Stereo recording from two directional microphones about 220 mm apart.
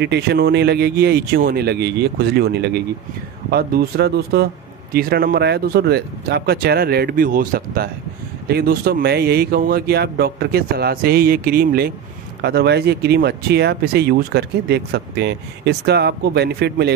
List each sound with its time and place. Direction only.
0.0 s speech: 50° right (ahead or behind)